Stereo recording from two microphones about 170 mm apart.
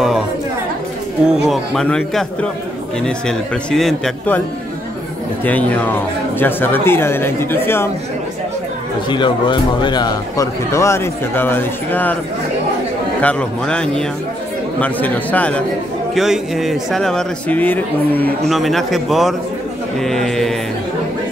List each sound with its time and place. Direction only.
1.2 s speech: centre (ahead or behind)
5.4 s speech: 10° left (ahead or behind)
9.1 s speech: 30° left (ahead or behind); by 12.2 s 10° left (ahead or behind)
13.2 s speech: 5° left (ahead or behind)